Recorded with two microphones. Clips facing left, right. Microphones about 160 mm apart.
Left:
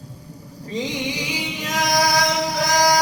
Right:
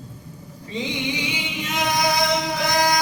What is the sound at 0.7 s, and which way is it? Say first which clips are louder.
Music: left 1 dB; 35° left (ahead or behind).